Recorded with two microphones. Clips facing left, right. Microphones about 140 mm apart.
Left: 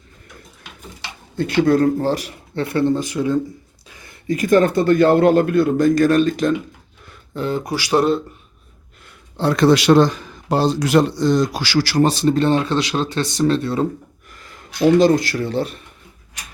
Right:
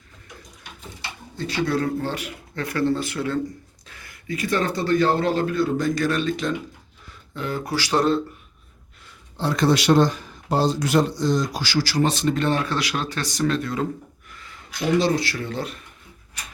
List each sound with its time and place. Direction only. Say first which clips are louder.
1.4 s speech: left 8 dB; 50° left (ahead or behind); by 3.4 s 15° left (ahead or behind)
3.8 s a sound: left 2 dB; 20° left (ahead or behind)
4.3 s speech: left 9 dB; 45° left (ahead or behind)
7.3 s speech: left 6 dB; 30° left (ahead or behind)
7.6 s speech: left 3 dB; 15° left (ahead or behind)
9.4 s a man's voice: left 6 dB; 70° left (ahead or behind)
12.0 s speech: left 5 dB; 35° left (ahead or behind)
14.3 s a sound: left 1 dB; 40° left (ahead or behind)
14.8 s speech: left 7 dB; 50° left (ahead or behind); by 15.8 s 30° left (ahead or behind)